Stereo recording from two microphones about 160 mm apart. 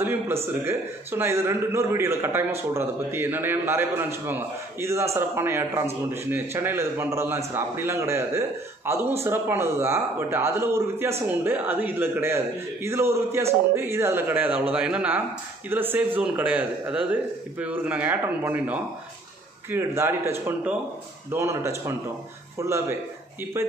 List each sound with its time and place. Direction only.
0.0 s a man's voice: 15° right (ahead or behind)